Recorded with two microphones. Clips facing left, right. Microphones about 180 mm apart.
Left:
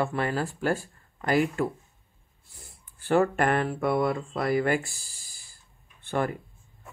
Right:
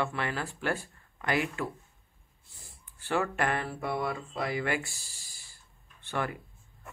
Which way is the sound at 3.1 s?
45° left (ahead or behind).